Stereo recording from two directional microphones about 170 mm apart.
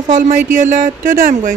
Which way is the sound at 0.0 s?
50° right (ahead or behind).